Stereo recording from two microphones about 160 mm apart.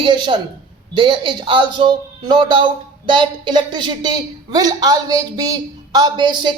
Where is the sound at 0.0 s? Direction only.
30° right (ahead or behind).